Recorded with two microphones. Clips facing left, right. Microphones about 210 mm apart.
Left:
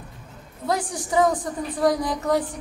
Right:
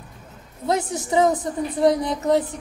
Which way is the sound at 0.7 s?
25° right (ahead or behind).